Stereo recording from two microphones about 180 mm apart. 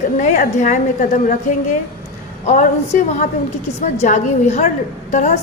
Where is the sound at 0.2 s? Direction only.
40° left (ahead or behind).